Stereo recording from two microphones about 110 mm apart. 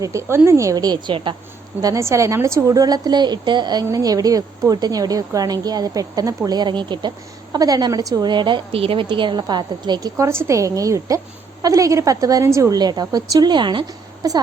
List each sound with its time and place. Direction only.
0.0 s a woman's voice: 25° right (ahead or behind); by 1.4 s 45° right (ahead or behind)
1.8 s a woman's voice: 30° right (ahead or behind)